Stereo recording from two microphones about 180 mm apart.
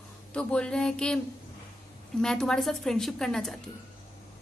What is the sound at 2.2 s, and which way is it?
A woman's voice, 5° left (ahead or behind).